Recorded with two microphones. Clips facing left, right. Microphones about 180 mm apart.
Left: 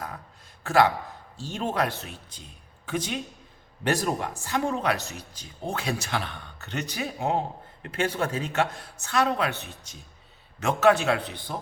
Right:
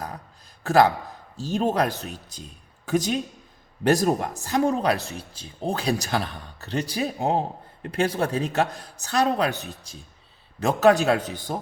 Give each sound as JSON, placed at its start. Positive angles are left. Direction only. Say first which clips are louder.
{"t": 0.6, "sound": "a man's voice", "louder": "right 3 dB", "side_deg": -40}